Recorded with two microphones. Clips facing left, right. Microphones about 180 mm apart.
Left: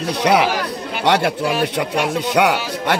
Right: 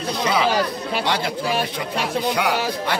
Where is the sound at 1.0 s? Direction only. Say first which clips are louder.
Left 9 dB; 70° left (ahead or behind).